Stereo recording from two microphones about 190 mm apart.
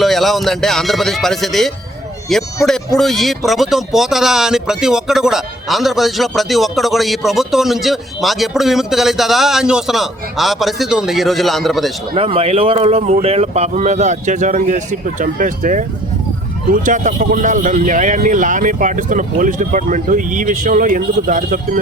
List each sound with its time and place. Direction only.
0.0 s speech: centre (ahead or behind)
12.1 s speech: 30° right (ahead or behind)
16.8 s speech: 40° right (ahead or behind)